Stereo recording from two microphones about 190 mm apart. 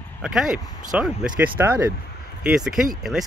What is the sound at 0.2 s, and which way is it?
Speech, centre (ahead or behind).